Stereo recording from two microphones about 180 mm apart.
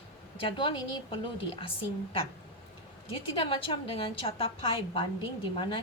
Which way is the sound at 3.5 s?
30° left (ahead or behind).